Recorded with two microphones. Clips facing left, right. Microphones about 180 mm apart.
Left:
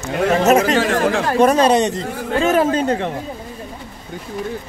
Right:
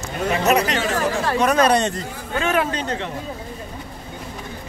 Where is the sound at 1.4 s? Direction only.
30° left (ahead or behind).